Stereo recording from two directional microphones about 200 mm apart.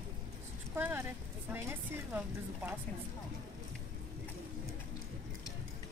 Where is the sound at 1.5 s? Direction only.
10° right (ahead or behind).